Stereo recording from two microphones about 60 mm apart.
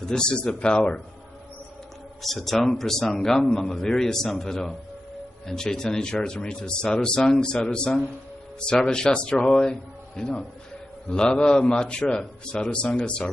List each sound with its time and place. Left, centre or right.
0.1 s speech: centre
2.2 s speech: centre